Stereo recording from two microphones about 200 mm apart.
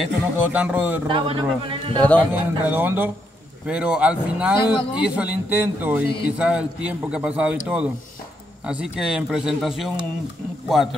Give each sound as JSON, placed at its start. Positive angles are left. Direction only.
{"t": 0.0, "sound": "a man's voice", "side_deg": -5}
{"t": 1.0, "sound": "a man's voice", "side_deg": -25}
{"t": 2.0, "sound": "a man's voice", "side_deg": 5}
{"t": 2.6, "sound": "a man's voice", "side_deg": -10}